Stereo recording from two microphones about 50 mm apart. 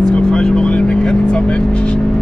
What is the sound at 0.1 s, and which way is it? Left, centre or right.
Vehicle, centre.